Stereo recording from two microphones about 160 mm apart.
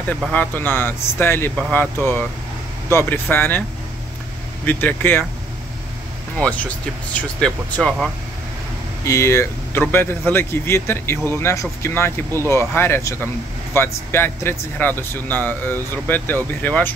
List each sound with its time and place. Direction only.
0.3 s speech: 10° left (ahead or behind)
4.6 s speech: 10° left (ahead or behind)
6.3 s speech: 5° left (ahead or behind)
9.0 s speech: 20° left (ahead or behind)